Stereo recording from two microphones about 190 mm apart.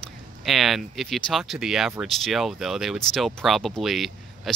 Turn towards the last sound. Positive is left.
turn(degrees=0)  # may be behind; listen again after turning